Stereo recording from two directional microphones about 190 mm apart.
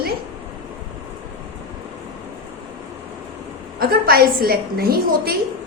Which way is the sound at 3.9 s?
50° right (ahead or behind).